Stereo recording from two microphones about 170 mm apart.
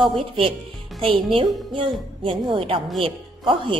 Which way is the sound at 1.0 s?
30° right (ahead or behind).